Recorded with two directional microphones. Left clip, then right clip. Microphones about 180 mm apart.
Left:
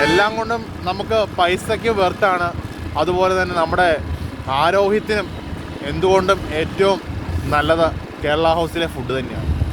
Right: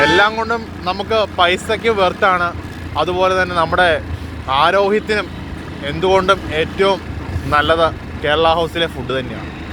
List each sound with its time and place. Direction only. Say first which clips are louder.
0.0 s speech: right 3 dB; 35° left (ahead or behind)